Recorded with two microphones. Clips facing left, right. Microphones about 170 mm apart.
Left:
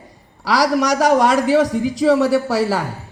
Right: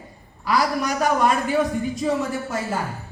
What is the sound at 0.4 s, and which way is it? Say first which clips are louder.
A man's voice: left 5 dB; 80° left.